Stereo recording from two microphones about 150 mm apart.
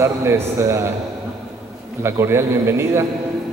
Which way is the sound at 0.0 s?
20° right (ahead or behind).